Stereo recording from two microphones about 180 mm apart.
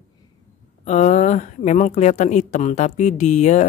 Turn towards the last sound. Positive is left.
turn(degrees=40)  # may be behind; listen again after turning